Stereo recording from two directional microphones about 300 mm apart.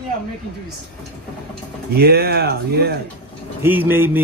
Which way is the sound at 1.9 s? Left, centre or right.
Right.